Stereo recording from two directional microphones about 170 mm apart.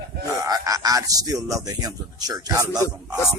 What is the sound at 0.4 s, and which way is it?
Speech, 20° right (ahead or behind).